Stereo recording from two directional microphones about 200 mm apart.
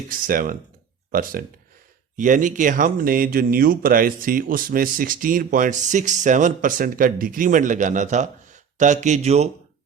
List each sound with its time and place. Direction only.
0.1 s speech: 45° right (ahead or behind)